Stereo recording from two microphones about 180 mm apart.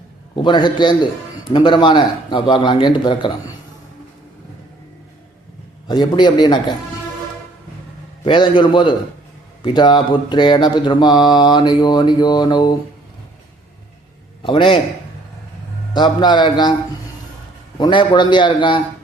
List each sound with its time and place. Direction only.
0.4 s mantra: 25° left (ahead or behind)
5.9 s mantra: 25° left (ahead or behind)
8.2 s mantra: 30° left (ahead or behind)
14.4 s mantra: 30° left (ahead or behind)
15.9 s mantra: 25° left (ahead or behind)
17.7 s mantra: 25° left (ahead or behind)